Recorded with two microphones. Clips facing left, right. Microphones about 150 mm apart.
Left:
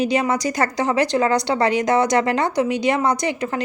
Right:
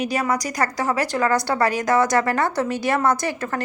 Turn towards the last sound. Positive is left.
turn(degrees=20)  # may be behind; listen again after turning